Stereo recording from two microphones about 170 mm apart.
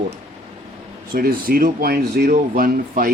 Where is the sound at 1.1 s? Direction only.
60° right (ahead or behind).